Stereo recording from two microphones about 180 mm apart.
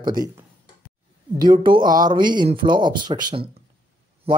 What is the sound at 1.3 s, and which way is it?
Speech, 25° right (ahead or behind).